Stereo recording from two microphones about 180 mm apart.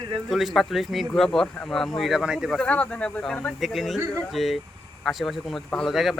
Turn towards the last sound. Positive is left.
turn(degrees=0)  # may be behind; listen again after turning